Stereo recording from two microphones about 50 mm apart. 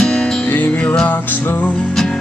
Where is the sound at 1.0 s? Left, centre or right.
Left.